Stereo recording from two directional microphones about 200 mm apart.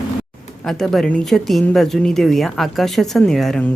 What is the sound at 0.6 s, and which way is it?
A woman's voice, centre (ahead or behind).